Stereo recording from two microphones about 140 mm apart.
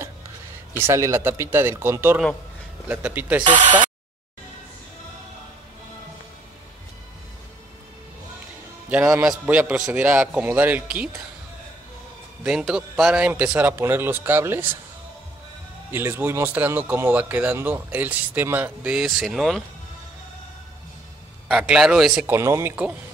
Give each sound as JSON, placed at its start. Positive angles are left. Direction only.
{"t": 0.7, "sound": "speech", "side_deg": -20}
{"t": 9.3, "sound": "speech", "side_deg": -10}
{"t": 12.4, "sound": "speech", "side_deg": -5}
{"t": 15.9, "sound": "speech", "side_deg": -15}
{"t": 21.5, "sound": "a man's voice", "side_deg": -5}
{"t": 22.3, "sound": "speech", "side_deg": -20}